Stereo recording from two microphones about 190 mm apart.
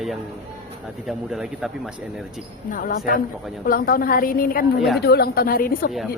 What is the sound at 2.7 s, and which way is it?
A woman's voice, 45° left (ahead or behind).